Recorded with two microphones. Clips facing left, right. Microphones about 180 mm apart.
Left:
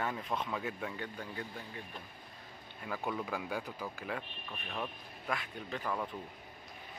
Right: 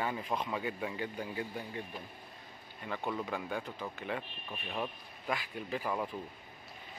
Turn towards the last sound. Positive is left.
turn(degrees=-5)  # may be behind; listen again after turning